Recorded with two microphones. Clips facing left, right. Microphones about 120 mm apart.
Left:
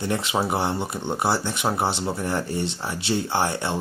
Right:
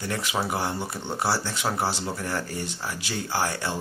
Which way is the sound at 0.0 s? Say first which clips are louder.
Left 4 dB; 20° left (ahead or behind).